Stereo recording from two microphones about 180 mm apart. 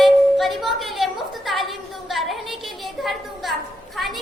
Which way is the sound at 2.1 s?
Centre (ahead or behind).